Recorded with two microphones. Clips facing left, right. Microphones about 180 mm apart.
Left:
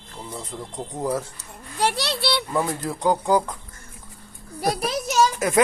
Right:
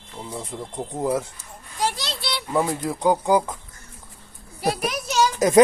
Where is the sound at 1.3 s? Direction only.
65° left (ahead or behind).